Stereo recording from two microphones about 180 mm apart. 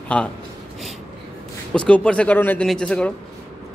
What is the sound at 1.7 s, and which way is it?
A man's voice, 5° left (ahead or behind).